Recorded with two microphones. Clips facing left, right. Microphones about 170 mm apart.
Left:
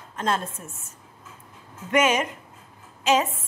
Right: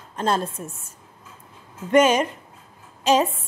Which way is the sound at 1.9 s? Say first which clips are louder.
Right 5 dB; 35° right (ahead or behind).